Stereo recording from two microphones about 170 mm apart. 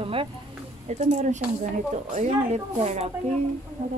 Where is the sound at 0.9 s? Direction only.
45° right (ahead or behind).